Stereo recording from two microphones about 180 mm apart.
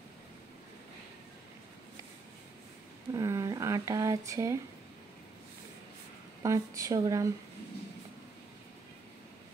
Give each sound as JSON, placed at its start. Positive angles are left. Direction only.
{"t": 3.1, "sound": "speech", "side_deg": -20}
{"t": 6.4, "sound": "speech", "side_deg": -15}